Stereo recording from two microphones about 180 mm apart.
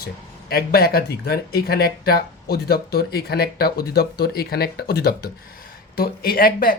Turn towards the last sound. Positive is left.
turn(degrees=55)  # may be behind; listen again after turning